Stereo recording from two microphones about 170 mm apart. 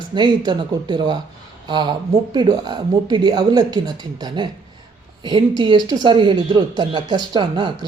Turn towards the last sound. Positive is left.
turn(degrees=-30)  # may be behind; listen again after turning